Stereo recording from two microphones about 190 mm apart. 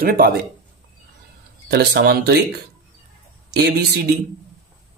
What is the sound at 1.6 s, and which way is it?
Speech, 55° right (ahead or behind).